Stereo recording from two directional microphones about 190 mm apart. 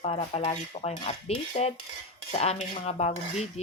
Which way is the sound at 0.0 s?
35° left (ahead or behind).